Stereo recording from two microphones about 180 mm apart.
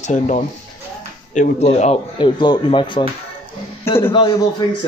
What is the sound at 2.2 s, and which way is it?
Speech, 25° left (ahead or behind).